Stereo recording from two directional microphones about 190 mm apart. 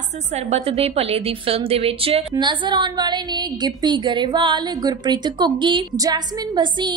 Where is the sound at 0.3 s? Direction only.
35° right (ahead or behind).